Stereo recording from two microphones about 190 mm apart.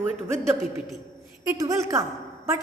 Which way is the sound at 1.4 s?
15° right (ahead or behind).